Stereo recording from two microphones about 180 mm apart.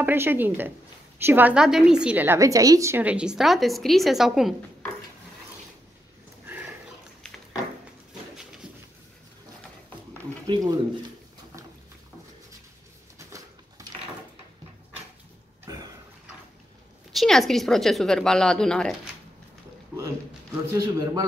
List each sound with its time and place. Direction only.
0.0 s a woman's voice: 10° right (ahead or behind)
10.4 s speech: 25° right (ahead or behind)
13.2 s bird: 15° right (ahead or behind)
15.6 s a sound: 20° right (ahead or behind)
17.1 s a woman's voice: centre (ahead or behind)
20.7 s a man's voice: 20° right (ahead or behind)